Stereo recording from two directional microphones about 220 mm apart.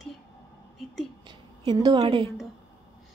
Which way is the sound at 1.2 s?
20° right (ahead or behind).